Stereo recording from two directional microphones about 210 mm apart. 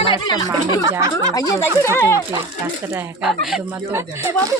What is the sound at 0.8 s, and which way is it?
Speech, 15° right (ahead or behind).